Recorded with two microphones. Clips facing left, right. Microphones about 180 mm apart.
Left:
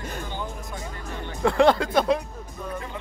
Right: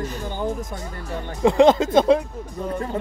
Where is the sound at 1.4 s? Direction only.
20° right (ahead or behind).